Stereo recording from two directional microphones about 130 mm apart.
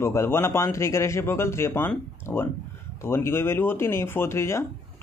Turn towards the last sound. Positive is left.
turn(degrees=20)  # may be behind; listen again after turning